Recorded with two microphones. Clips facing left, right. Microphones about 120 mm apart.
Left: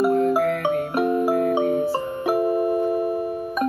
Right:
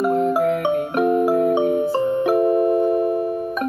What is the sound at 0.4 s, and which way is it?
Music, 20° right (ahead or behind).